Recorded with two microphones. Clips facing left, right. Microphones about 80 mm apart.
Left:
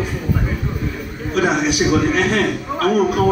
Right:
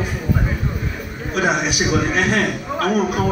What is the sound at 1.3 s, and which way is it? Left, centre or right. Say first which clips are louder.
Speech: left 2 dB; centre.